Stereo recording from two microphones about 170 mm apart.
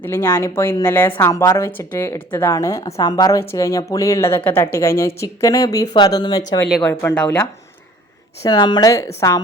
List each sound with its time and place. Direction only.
0.0 s a woman's voice: 15° left (ahead or behind)
8.4 s speech: 25° left (ahead or behind)